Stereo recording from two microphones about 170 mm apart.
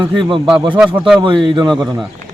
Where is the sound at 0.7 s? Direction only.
5° right (ahead or behind).